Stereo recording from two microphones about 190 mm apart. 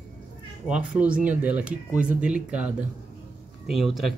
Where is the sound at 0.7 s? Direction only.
5° right (ahead or behind).